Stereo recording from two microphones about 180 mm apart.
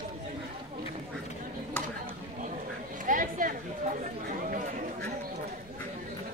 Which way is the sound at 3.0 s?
45° right (ahead or behind).